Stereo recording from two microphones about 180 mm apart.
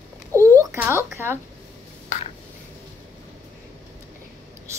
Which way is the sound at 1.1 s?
15° right (ahead or behind).